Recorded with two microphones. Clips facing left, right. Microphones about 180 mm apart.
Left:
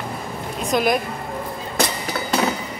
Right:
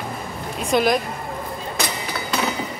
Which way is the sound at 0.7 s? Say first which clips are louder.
Right 1 dB; centre (ahead or behind).